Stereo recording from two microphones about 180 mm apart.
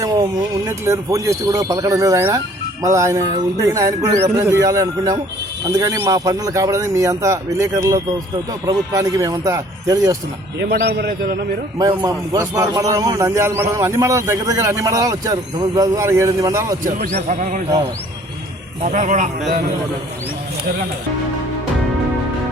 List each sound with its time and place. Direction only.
0.0 s a man's voice: 20° right (ahead or behind)
10.6 s a man's voice: 65° right (ahead or behind)
11.8 s a man's voice: 20° right (ahead or behind)
16.8 s speech: 50° right (ahead or behind)
18.8 s speech: 45° right (ahead or behind)